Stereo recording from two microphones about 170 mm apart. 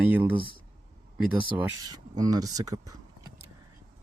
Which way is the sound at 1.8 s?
20° right (ahead or behind).